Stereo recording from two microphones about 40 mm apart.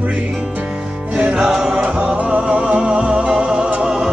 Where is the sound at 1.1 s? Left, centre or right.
Centre.